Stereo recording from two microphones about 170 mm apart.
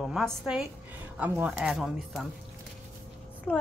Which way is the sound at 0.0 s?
Centre (ahead or behind).